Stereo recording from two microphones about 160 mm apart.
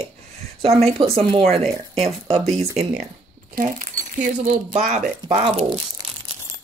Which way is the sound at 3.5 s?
55° right (ahead or behind).